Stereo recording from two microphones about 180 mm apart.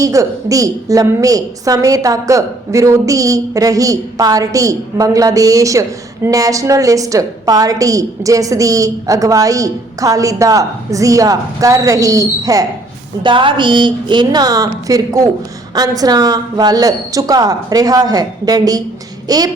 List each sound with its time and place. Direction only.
0.0 s a woman's voice: 20° right (ahead or behind)